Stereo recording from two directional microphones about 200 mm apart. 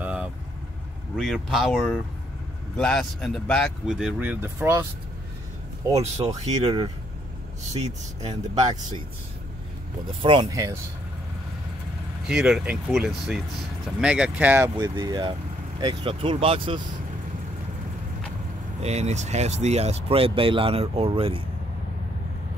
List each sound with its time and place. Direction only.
0.0 s vehicle: 5° right (ahead or behind)
1.1 s speech: centre (ahead or behind)
5.9 s speech: 15° right (ahead or behind)
6.2 s speech: 30° right (ahead or behind)
10.2 s speech: 20° right (ahead or behind)
12.3 s speech: 5° right (ahead or behind)
14.8 s speech: 20° right (ahead or behind)
18.8 s speech: 35° right (ahead or behind)